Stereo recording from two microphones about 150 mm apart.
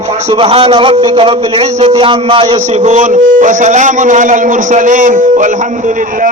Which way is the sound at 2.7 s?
50° right (ahead or behind).